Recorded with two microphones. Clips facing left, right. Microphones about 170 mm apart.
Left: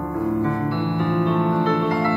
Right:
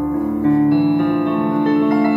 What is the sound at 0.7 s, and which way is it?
Music, 55° right (ahead or behind).